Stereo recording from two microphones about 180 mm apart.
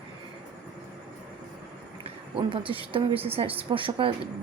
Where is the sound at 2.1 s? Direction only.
30° right (ahead or behind).